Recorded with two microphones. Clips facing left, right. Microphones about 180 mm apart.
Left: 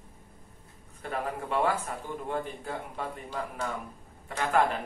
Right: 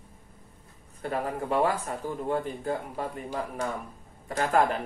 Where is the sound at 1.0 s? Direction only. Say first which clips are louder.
Right 3 dB; 40° right (ahead or behind).